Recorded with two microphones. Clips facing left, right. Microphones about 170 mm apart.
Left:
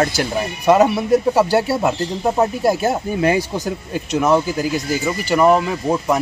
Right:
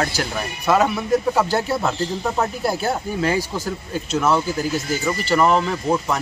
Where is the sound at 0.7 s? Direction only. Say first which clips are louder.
Left 5 dB; 15° left (ahead or behind).